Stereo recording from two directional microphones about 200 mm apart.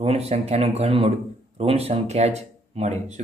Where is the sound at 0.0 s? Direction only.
30° right (ahead or behind).